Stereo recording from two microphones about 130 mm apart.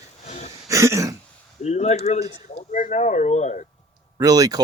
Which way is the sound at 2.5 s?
70° left (ahead or behind).